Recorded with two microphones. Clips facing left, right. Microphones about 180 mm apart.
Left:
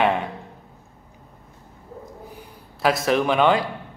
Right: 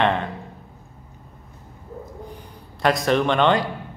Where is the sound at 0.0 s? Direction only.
10° left (ahead or behind).